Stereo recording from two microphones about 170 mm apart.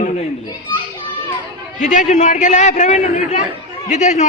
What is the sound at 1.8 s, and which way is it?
A man's voice, 45° left (ahead or behind).